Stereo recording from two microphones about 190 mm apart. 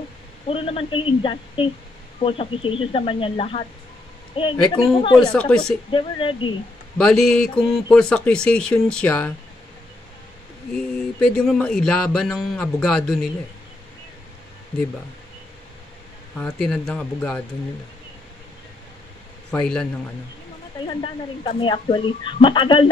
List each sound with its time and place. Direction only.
0.5 s speech: 30° left (ahead or behind)
5.2 s speech: 5° left (ahead or behind)
5.9 s speech: 25° left (ahead or behind)
7.0 s speech: 5° left (ahead or behind)
10.7 s speech: 5° left (ahead or behind)
16.3 s speech: 5° left (ahead or behind)
19.5 s speech: 5° left (ahead or behind)
20.8 s speech: 25° left (ahead or behind)